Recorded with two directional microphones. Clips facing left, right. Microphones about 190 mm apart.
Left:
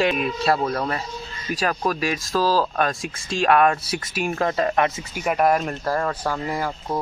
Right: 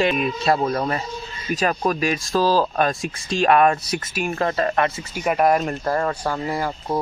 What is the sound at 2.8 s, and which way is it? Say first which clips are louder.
Speech: right 2 dB; centre (ahead or behind).